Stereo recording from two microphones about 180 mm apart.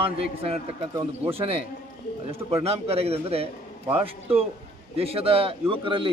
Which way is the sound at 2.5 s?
35° right (ahead or behind).